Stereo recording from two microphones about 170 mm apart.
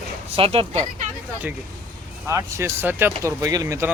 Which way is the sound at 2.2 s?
15° right (ahead or behind).